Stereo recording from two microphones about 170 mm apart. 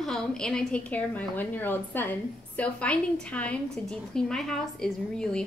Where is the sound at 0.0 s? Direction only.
5° left (ahead or behind).